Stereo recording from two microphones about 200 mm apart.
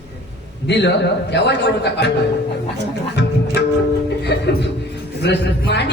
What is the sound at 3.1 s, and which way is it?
Music, 60° left (ahead or behind).